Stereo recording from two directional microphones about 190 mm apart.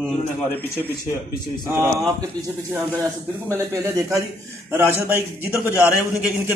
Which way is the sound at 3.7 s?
15° right (ahead or behind).